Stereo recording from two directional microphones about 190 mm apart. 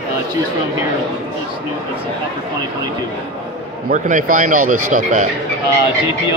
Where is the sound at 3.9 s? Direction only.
45° right (ahead or behind).